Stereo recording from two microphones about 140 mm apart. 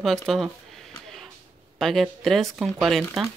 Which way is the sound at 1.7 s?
Centre (ahead or behind).